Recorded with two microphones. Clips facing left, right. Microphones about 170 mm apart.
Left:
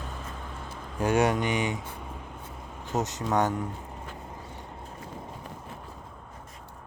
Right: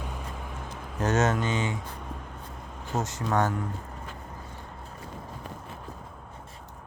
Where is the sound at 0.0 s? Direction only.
10° right (ahead or behind).